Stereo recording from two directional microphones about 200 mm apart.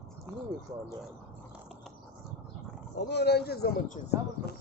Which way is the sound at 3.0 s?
55° left (ahead or behind).